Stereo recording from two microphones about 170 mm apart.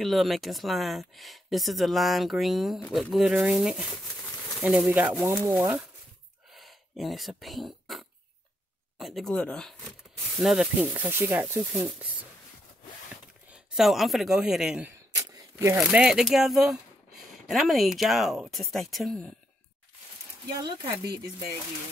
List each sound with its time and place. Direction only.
0.0 s speech: centre (ahead or behind)
6.5 s a sound: centre (ahead or behind)
8.9 s speech: centre (ahead or behind)
13.5 s a man's voice: 5° right (ahead or behind)
15.1 s a sound: 15° right (ahead or behind)
15.8 s speech: 5° right (ahead or behind)
20.5 s speech: 25° right (ahead or behind)